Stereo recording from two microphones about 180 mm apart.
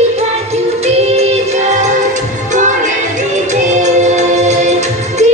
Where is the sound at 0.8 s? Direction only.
40° right (ahead or behind).